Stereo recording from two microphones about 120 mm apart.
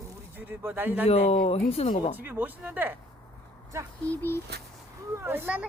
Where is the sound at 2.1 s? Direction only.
15° right (ahead or behind).